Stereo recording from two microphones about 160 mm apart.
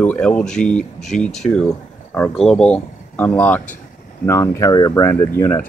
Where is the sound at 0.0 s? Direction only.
10° left (ahead or behind).